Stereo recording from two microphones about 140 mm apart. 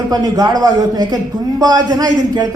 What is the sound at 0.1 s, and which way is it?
A man's voice, 30° right (ahead or behind).